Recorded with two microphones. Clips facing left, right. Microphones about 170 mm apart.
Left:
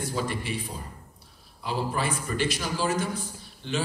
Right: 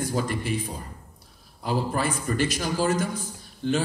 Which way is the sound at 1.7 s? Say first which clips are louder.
Right 3 dB; 45° right (ahead or behind).